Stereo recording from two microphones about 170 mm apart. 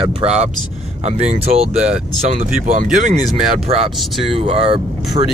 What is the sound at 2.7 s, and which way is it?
Speech, 50° right (ahead or behind).